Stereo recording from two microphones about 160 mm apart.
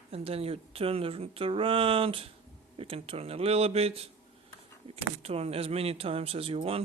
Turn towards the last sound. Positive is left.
turn(degrees=-35)  # may be behind; listen again after turning